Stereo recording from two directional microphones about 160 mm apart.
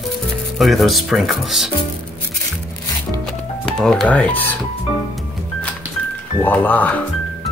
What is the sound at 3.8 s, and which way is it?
Speech, 5° left (ahead or behind).